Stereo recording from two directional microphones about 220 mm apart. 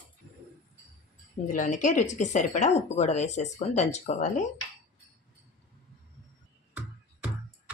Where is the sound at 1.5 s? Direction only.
35° left (ahead or behind).